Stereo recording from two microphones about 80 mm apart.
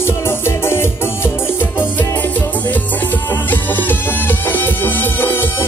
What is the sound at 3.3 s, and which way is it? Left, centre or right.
Music, left.